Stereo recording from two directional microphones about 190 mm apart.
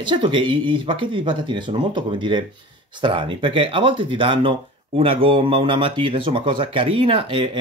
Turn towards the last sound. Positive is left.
turn(degrees=-25)  # may be behind; listen again after turning